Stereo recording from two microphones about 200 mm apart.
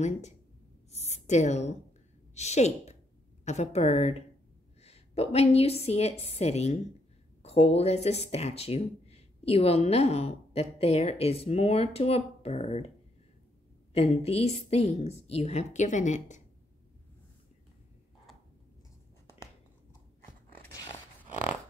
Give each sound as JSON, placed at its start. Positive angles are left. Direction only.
{"t": 0.9, "sound": "a woman's voice", "side_deg": 35}
{"t": 13.9, "sound": "speech", "side_deg": 30}
{"t": 20.5, "sound": "a sound", "side_deg": 15}